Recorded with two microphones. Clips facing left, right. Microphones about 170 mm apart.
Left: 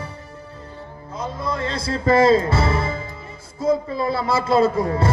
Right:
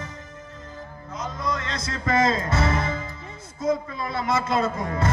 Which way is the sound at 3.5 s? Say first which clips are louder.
Left 5 dB; 30° left (ahead or behind).